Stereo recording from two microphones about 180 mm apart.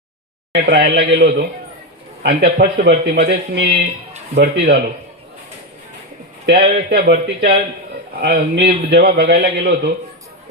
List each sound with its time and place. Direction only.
0.5 s a man's voice: 70° right (ahead or behind)
6.4 s speech: 70° right (ahead or behind)
8.2 s a man's voice: 75° right (ahead or behind)